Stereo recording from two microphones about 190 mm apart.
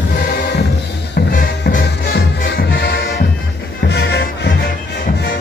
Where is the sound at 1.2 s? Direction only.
50° left (ahead or behind).